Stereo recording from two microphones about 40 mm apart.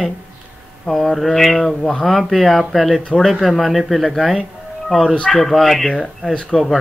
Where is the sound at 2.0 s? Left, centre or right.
Centre.